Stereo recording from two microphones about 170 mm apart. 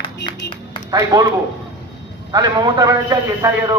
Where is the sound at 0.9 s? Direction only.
25° right (ahead or behind).